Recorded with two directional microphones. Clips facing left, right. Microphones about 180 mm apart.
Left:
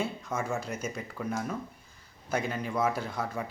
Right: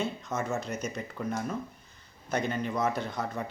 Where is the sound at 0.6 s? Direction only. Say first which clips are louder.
Right 1 dB; 10° left (ahead or behind).